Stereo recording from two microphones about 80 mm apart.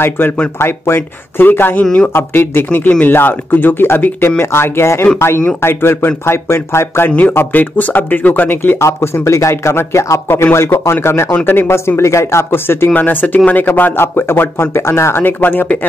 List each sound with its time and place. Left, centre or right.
0.6 s a man's voice: left
7.1 s a man's voice: centre
8.8 s a man's voice: left